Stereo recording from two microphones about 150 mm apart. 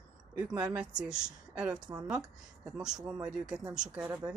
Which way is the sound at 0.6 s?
10° right (ahead or behind).